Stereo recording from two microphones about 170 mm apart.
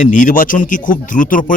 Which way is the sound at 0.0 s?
50° left (ahead or behind).